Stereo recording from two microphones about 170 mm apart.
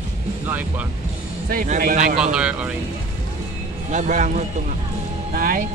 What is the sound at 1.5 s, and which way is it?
Speech, 55° right (ahead or behind).